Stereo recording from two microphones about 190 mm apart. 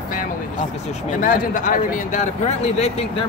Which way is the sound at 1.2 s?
45° left (ahead or behind).